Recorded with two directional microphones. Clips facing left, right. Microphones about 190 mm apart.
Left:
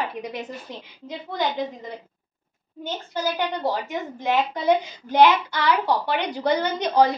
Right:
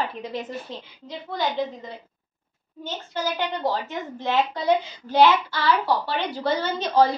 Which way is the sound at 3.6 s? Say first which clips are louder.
Left 1 dB; 15° left (ahead or behind).